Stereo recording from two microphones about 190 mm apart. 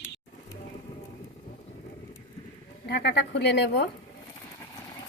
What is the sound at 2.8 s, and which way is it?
A woman's voice, 60° left (ahead or behind).